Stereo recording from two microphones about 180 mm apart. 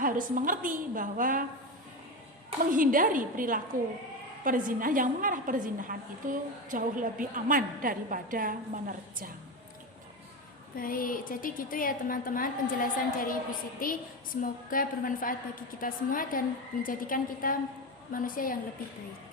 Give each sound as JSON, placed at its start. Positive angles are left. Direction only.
{"t": 0.0, "sound": "a woman's voice", "side_deg": -50}
{"t": 2.7, "sound": "a woman's voice", "side_deg": -50}
{"t": 10.8, "sound": "a woman's voice", "side_deg": 50}